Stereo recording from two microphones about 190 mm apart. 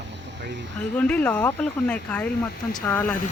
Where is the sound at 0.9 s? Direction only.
5° left (ahead or behind).